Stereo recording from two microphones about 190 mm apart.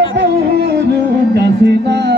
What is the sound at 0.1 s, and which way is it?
Music, 60° right (ahead or behind).